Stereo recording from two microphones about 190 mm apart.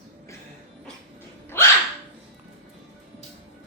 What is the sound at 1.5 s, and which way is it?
Dog, 10° left (ahead or behind).